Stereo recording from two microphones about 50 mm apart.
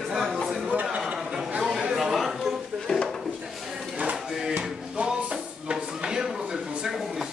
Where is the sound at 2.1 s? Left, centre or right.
Centre.